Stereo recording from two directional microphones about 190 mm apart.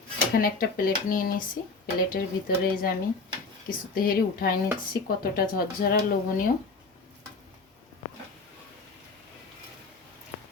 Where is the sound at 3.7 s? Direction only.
50° left (ahead or behind).